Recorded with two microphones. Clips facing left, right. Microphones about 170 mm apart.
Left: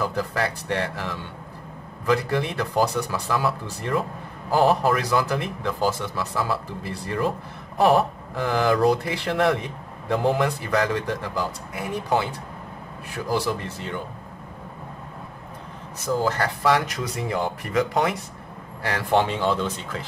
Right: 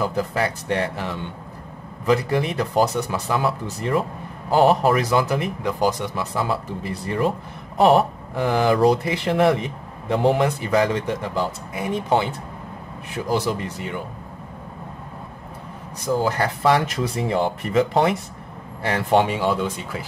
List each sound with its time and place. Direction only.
0.0 s speech: 15° right (ahead or behind)
16.0 s speech: 15° right (ahead or behind)